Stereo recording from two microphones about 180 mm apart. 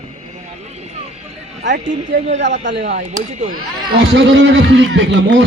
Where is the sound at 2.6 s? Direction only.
80° right.